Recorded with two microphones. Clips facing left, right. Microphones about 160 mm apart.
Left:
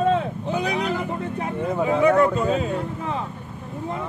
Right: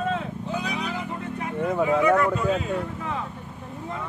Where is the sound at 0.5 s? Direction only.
70° left (ahead or behind).